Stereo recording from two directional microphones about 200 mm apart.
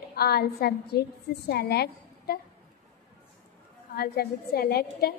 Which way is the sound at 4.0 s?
50° left (ahead or behind).